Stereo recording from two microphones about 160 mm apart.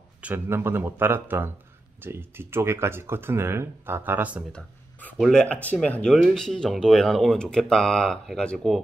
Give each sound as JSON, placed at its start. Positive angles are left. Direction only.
{"t": 0.2, "sound": "speech", "side_deg": -10}
{"t": 4.5, "sound": "speech", "side_deg": 5}